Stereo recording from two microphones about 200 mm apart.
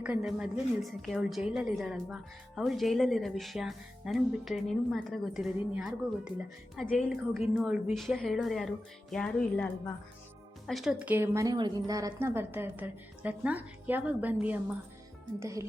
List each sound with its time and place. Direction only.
0.0 s a woman's voice: 5° right (ahead or behind)